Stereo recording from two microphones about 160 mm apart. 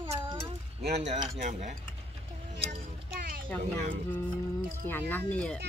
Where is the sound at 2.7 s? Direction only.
65° right (ahead or behind).